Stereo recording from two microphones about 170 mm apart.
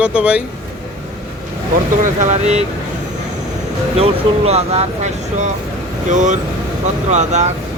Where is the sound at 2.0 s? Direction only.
45° right (ahead or behind).